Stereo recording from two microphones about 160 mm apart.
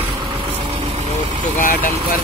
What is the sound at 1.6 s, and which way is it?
Speech, 60° left (ahead or behind).